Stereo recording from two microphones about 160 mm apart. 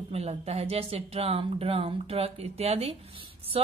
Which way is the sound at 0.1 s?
40° right (ahead or behind).